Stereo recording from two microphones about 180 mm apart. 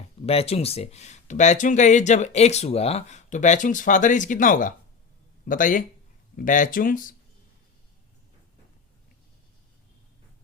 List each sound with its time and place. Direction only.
0.3 s speech: 35° left (ahead or behind); by 7.1 s 50° left (ahead or behind)